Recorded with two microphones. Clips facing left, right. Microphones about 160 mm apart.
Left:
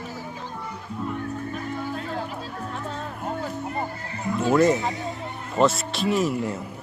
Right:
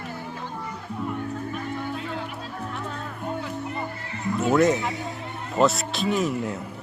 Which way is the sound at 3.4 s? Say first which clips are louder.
Left 2 dB; 40° left (ahead or behind).